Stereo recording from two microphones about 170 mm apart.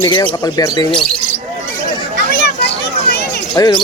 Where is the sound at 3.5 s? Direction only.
20° left (ahead or behind).